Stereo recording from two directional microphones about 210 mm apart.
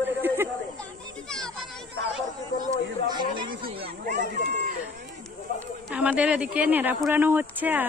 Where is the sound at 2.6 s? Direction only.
20° right (ahead or behind).